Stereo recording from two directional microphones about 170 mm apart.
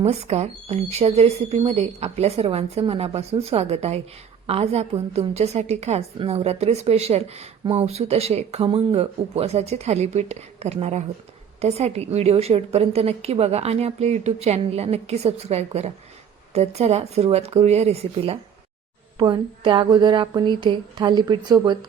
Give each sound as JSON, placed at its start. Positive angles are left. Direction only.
{"t": 0.0, "sound": "a woman's voice", "side_deg": -40}